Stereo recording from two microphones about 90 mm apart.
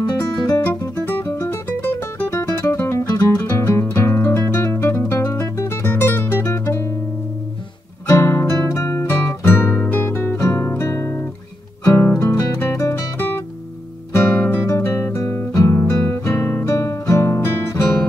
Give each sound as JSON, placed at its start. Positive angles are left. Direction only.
{"t": 0.5, "sound": "music", "side_deg": 45}
{"t": 1.0, "sound": "music", "side_deg": 30}
{"t": 8.1, "sound": "music", "side_deg": 35}
{"t": 12.1, "sound": "music", "side_deg": 35}
{"t": 12.7, "sound": "music", "side_deg": 40}
{"t": 14.1, "sound": "music", "side_deg": 25}
{"t": 14.7, "sound": "guitar", "side_deg": 35}